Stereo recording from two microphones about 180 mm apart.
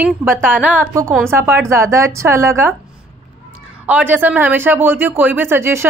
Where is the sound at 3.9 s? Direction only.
10° right (ahead or behind).